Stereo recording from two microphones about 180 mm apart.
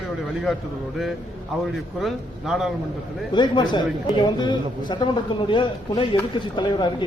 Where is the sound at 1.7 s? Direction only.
Centre (ahead or behind).